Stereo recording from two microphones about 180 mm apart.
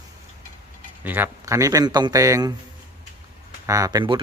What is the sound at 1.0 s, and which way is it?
Speech, 10° right (ahead or behind).